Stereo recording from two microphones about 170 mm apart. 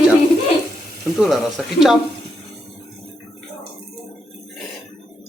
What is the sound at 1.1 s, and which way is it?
Speech, centre (ahead or behind).